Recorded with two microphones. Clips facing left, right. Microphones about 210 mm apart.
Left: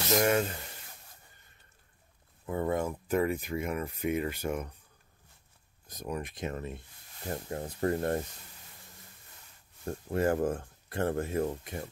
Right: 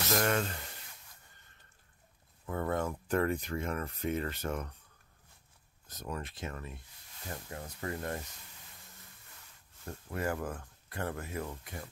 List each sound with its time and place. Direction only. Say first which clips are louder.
0.1 s speech: left 5 dB; 10° left (ahead or behind)
2.4 s speech: left 3 dB; 15° left (ahead or behind)
5.9 s speech: left 4 dB; 15° left (ahead or behind); by 8.2 s 35° left (ahead or behind)
9.8 s speech: left 7 dB; 30° left (ahead or behind)